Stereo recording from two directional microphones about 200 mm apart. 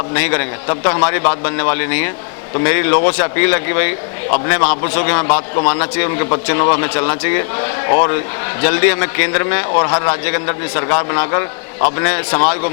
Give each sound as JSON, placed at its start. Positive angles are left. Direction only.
{"t": 0.1, "sound": "a man's voice", "side_deg": 15}